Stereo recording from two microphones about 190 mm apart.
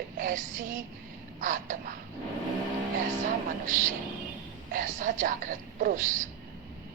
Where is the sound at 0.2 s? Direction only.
45° right (ahead or behind).